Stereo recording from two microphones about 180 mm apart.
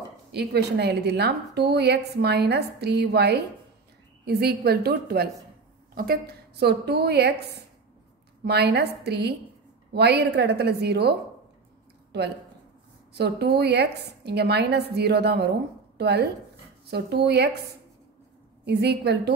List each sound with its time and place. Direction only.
0.3 s a woman's voice: 65° right (ahead or behind)
18.7 s a woman's voice: 65° right (ahead or behind)